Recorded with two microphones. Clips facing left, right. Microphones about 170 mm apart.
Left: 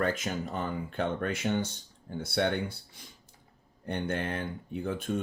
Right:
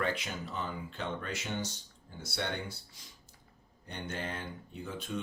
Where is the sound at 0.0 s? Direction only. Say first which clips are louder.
Left 5 dB; 45° left (ahead or behind).